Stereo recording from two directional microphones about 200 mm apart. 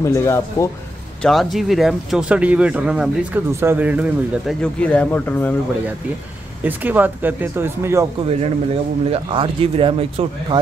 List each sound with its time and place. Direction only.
0.0 s speech: 15° left (ahead or behind)
1.2 s speech: centre (ahead or behind)
6.6 s speech: 10° right (ahead or behind)
9.1 s speech: 25° right (ahead or behind)